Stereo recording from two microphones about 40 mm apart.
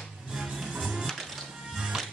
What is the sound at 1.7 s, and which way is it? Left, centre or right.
Music, centre.